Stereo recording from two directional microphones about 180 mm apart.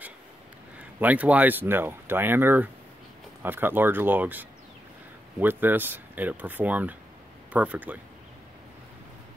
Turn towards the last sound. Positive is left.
turn(degrees=-10)  # may be behind; listen again after turning